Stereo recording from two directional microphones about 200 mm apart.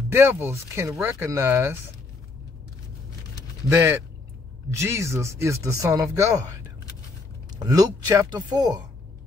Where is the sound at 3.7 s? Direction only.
15° right (ahead or behind).